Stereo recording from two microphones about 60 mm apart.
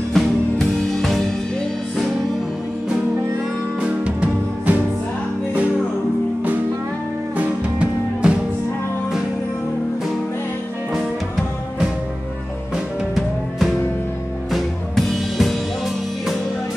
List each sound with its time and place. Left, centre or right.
0.1 s music: centre
3.8 s music: centre
7.3 s music: centre
14.5 s music: centre